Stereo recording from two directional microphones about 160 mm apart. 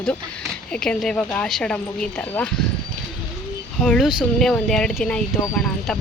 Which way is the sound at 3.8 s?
Centre (ahead or behind).